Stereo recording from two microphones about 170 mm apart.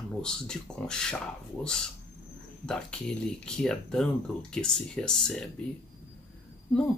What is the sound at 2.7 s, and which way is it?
Speech, 5° left (ahead or behind).